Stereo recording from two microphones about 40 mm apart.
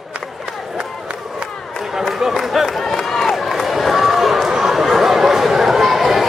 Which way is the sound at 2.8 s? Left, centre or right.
Centre.